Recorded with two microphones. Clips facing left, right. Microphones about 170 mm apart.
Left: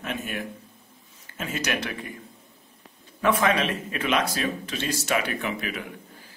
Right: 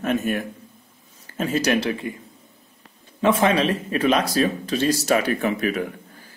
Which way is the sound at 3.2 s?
25° right (ahead or behind).